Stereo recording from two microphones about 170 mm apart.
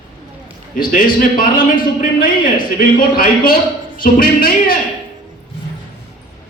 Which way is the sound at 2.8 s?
55° left (ahead or behind).